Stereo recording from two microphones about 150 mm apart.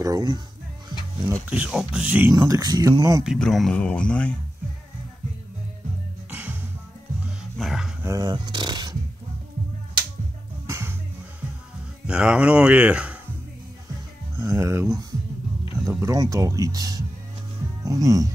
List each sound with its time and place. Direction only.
0.0 s speech: 25° right (ahead or behind)
1.5 s speech: 5° right (ahead or behind)
2.3 s speech: 25° right (ahead or behind)
3.3 s speech: centre (ahead or behind)
6.3 s music: 15° right (ahead or behind)
7.5 s dog: centre (ahead or behind)
8.0 s speech: 20° right (ahead or behind)
10.7 s music: 15° right (ahead or behind)
12.1 s speech: 5° right (ahead or behind)
14.3 s speech: 25° right (ahead or behind)